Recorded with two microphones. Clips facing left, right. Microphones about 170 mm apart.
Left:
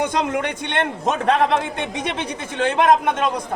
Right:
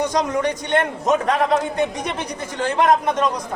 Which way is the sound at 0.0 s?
60° left (ahead or behind).